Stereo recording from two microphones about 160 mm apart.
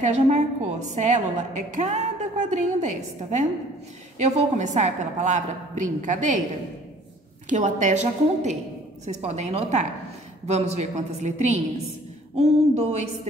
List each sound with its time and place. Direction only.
0.0 s a woman's voice: 45° right (ahead or behind)
4.6 s a woman's voice: 45° right (ahead or behind)
7.4 s a woman's voice: 50° right (ahead or behind)
12.4 s a sound: 40° right (ahead or behind)